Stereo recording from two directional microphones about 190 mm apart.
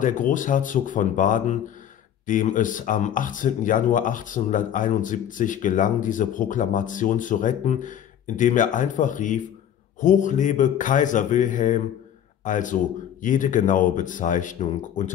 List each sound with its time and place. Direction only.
0.0 s a man's voice: 45° left (ahead or behind)